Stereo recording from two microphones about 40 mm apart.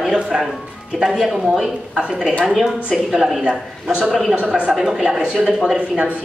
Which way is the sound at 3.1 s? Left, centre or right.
Centre.